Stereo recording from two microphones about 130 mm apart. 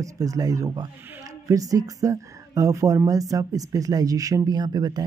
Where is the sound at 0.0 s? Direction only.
25° right (ahead or behind).